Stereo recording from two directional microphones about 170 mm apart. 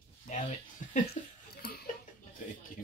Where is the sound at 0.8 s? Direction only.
50° left (ahead or behind).